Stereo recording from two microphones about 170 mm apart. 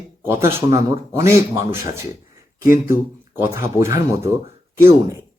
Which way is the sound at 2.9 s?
15° right (ahead or behind).